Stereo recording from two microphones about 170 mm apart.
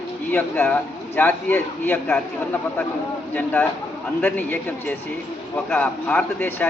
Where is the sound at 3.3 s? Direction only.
10° left (ahead or behind).